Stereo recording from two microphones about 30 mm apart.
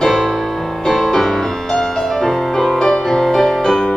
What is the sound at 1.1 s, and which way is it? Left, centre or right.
Music, centre.